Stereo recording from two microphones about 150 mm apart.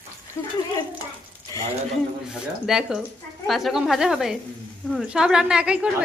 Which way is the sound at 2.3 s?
5° right (ahead or behind).